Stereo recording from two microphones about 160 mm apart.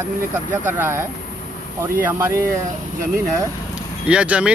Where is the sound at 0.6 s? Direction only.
15° right (ahead or behind).